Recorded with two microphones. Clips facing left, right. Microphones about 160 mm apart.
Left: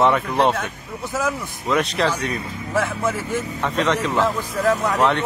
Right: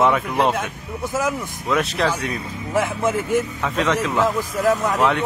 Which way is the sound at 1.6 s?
Centre (ahead or behind).